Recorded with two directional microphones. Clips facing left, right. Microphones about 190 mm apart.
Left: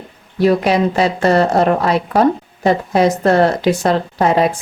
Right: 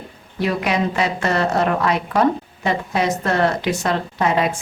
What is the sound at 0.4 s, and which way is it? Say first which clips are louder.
Speech: left 7 dB; 35° left (ahead or behind).